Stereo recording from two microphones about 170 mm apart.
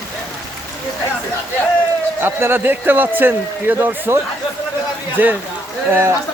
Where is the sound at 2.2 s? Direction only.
15° right (ahead or behind).